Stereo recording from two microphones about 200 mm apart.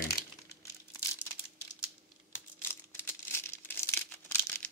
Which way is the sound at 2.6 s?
10° left (ahead or behind).